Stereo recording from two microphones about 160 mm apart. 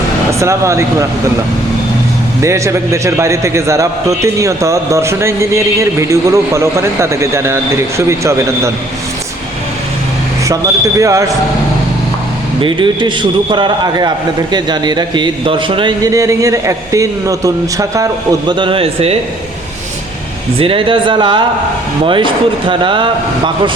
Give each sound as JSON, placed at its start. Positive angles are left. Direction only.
{"t": 0.3, "sound": "speech", "side_deg": -20}
{"t": 2.4, "sound": "a man's voice", "side_deg": -20}
{"t": 10.5, "sound": "speech", "side_deg": -20}
{"t": 12.6, "sound": "speech", "side_deg": -30}
{"t": 20.6, "sound": "speech", "side_deg": -35}